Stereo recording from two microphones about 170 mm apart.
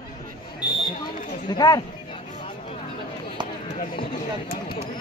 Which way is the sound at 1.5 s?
25° left (ahead or behind).